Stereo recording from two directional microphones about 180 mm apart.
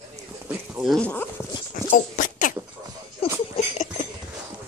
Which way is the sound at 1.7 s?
45° left (ahead or behind).